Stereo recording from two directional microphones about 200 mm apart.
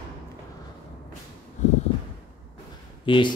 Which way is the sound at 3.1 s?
25° left (ahead or behind).